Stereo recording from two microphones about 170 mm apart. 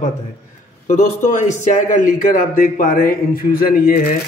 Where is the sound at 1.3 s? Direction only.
50° left (ahead or behind).